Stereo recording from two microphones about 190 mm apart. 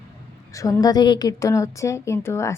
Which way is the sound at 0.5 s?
20° left (ahead or behind).